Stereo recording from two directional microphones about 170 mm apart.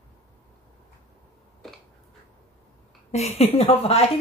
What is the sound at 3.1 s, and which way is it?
A woman's voice, 40° left (ahead or behind).